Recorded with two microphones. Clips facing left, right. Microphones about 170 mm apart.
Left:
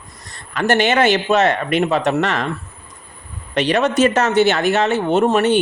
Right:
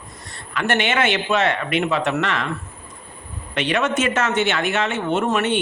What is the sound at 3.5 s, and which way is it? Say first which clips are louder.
Speech: left 5 dB; 35° left (ahead or behind).